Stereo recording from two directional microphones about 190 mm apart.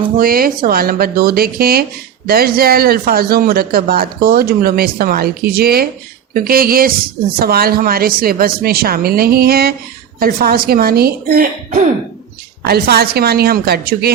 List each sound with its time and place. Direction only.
0.2 s a woman's voice: 50° right (ahead or behind)